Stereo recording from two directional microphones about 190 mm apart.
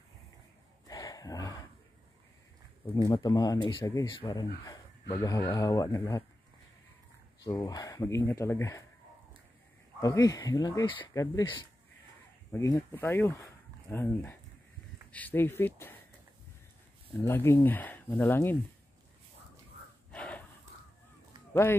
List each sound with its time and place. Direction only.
0.8 s a sound: 20° left (ahead or behind)
3.1 s speech: 20° left (ahead or behind)
7.4 s speech: 20° left (ahead or behind)
9.9 s speech: 20° left (ahead or behind)
17.2 s speech: 15° left (ahead or behind)
20.1 s a sound: 5° left (ahead or behind)